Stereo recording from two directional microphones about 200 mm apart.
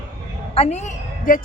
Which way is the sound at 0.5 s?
30° left (ahead or behind).